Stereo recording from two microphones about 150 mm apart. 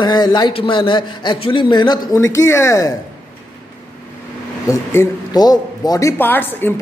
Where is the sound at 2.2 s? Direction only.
20° left (ahead or behind).